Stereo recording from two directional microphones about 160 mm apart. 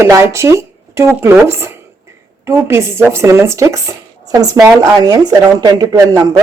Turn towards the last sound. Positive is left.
turn(degrees=-25)  # may be behind; listen again after turning